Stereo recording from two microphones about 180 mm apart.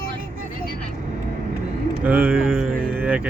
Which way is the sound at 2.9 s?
10° right (ahead or behind).